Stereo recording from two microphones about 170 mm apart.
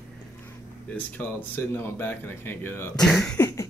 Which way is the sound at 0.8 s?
10° left (ahead or behind).